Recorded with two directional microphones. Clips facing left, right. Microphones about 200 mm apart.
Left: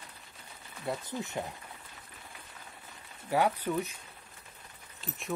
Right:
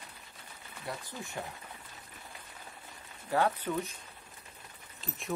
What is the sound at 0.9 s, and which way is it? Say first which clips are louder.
Speech: left 6 dB; 20° left (ahead or behind).